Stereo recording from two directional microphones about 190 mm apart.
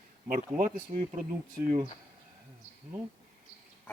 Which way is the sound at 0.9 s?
35° right (ahead or behind).